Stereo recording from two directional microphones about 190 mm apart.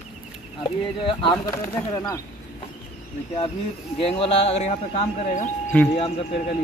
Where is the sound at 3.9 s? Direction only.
30° left (ahead or behind).